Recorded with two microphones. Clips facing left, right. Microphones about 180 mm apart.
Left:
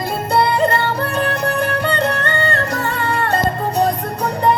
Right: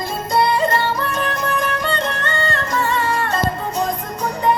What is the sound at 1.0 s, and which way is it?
Music, 35° left (ahead or behind).